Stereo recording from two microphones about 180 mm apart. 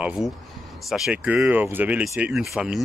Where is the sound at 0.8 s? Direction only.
Centre (ahead or behind).